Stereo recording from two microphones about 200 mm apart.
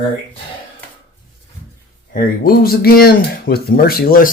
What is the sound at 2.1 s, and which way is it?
Speech, 45° left (ahead or behind).